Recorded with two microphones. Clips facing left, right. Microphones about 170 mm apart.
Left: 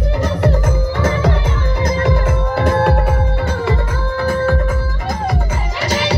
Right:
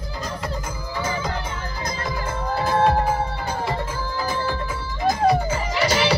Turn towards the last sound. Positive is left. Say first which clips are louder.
# left 9 dB
turn(degrees=70)  # may be behind; listen again after turning